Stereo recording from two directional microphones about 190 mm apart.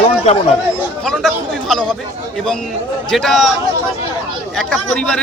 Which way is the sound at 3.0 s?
Centre (ahead or behind).